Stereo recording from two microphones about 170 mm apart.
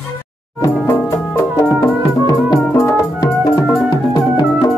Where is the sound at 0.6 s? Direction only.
15° left (ahead or behind).